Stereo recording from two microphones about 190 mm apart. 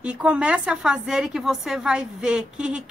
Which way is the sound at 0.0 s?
5° right (ahead or behind).